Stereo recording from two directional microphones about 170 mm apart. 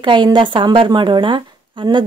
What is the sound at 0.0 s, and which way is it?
Speech, 25° right (ahead or behind).